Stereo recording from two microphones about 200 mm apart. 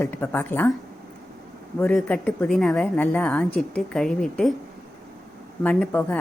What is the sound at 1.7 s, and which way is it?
A woman's voice, 5° left (ahead or behind).